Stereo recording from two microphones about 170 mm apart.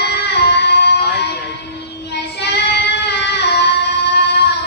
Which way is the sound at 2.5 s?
90° left.